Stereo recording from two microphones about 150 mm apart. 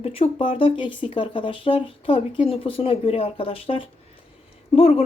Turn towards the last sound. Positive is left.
turn(degrees=40)  # may be behind; listen again after turning